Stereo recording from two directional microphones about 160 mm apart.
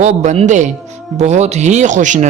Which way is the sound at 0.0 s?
45° right (ahead or behind).